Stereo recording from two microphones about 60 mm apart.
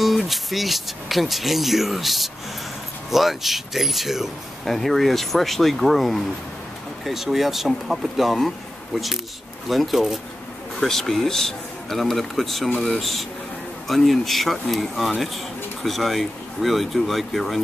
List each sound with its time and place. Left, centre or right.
0.0 s speech: centre